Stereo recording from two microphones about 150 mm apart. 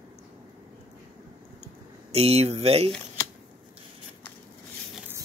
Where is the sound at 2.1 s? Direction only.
45° right (ahead or behind).